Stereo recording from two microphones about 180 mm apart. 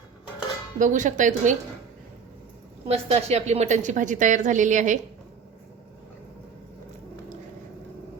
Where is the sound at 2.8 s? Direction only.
35° right (ahead or behind).